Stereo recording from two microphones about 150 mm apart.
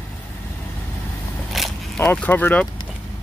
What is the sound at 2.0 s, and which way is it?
Speech, 15° left (ahead or behind).